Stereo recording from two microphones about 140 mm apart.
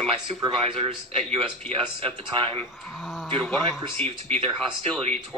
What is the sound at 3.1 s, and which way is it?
Speech, 5° right (ahead or behind).